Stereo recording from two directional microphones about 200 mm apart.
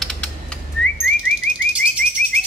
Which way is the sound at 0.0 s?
5° left (ahead or behind).